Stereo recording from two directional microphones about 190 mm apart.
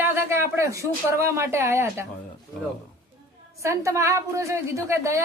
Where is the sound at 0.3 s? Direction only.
15° right (ahead or behind).